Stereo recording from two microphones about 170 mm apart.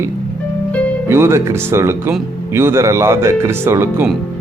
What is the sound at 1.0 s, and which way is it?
Speech, 15° right (ahead or behind).